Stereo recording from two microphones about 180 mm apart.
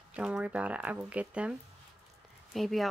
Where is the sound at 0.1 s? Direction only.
5° right (ahead or behind).